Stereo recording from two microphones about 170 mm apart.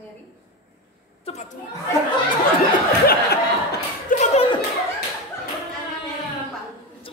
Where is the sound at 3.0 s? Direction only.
65° left (ahead or behind).